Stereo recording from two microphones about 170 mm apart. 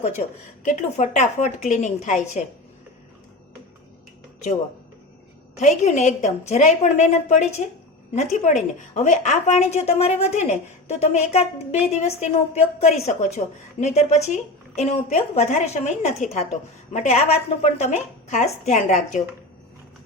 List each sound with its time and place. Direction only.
0.6 s a woman's voice: 45° left (ahead or behind)
5.5 s a woman's voice: 40° left (ahead or behind)